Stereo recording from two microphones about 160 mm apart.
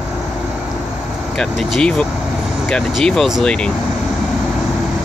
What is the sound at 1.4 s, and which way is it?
Speech, centre (ahead or behind).